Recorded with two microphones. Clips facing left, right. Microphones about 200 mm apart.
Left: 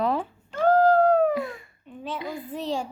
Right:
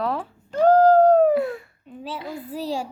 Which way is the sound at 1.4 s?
Centre (ahead or behind).